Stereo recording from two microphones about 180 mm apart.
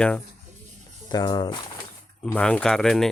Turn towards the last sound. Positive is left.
turn(degrees=5)  # may be behind; listen again after turning